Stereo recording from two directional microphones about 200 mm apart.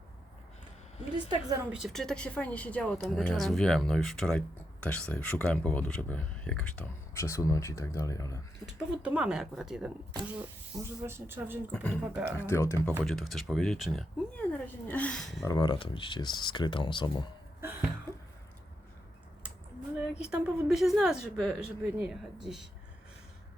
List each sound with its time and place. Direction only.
1.3 s a woman's voice: 20° right (ahead or behind)
1.7 s speech: centre (ahead or behind); by 8.4 s 15° left (ahead or behind)
8.6 s speech: 5° right (ahead or behind)
10.8 s speech: 10° right (ahead or behind)
11.7 s speech: 5° left (ahead or behind)
13.1 s speech: centre (ahead or behind)
15.4 s speech: 20° left (ahead or behind)
17.6 s cough: 10° right (ahead or behind)
20.2 s speech: 5° right (ahead or behind)